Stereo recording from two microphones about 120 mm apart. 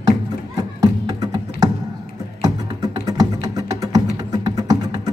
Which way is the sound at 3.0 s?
30° right (ahead or behind).